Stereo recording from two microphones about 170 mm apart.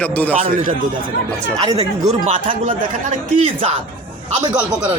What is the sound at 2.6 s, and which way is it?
Speech, 50° right (ahead or behind).